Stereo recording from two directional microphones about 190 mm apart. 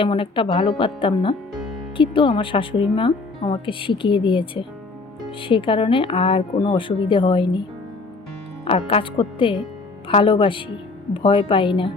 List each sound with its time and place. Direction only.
0.0 s speech: 25° left (ahead or behind)
8.6 s speech: 30° left (ahead or behind)